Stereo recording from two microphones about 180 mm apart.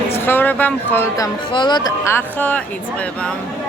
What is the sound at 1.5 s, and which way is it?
Speech, 25° left (ahead or behind).